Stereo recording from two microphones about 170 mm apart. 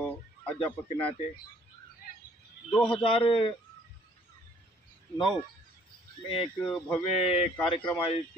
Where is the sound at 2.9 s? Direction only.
30° left (ahead or behind).